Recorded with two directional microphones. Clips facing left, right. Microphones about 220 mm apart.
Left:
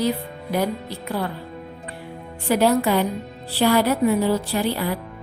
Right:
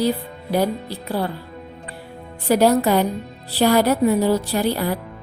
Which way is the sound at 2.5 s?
40° right (ahead or behind).